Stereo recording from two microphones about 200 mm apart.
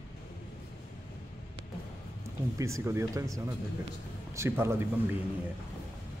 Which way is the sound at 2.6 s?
15° right (ahead or behind).